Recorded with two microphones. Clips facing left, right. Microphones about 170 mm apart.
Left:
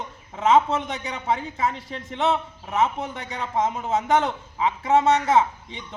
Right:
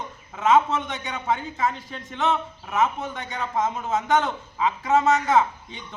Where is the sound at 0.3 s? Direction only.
30° left (ahead or behind).